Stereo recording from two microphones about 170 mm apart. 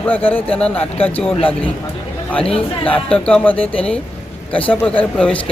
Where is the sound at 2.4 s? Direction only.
35° left (ahead or behind).